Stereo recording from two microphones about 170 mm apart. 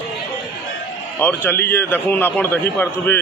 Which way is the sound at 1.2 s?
10° left (ahead or behind).